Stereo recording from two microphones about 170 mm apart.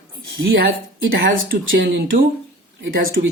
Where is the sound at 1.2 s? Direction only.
75° right (ahead or behind).